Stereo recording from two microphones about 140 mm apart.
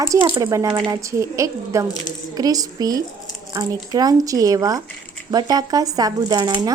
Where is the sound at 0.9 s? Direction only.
20° right (ahead or behind).